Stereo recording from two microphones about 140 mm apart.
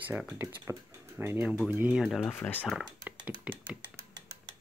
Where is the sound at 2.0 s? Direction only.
5° left (ahead or behind).